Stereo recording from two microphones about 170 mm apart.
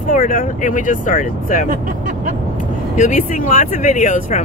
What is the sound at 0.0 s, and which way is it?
Speech, 50° left (ahead or behind).